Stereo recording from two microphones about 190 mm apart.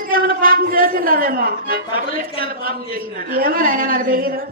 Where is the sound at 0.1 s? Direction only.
50° right (ahead or behind).